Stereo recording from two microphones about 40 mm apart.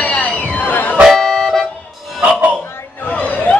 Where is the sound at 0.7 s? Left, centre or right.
Left.